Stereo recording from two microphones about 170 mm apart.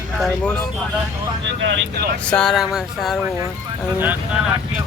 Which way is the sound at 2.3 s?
5° left (ahead or behind).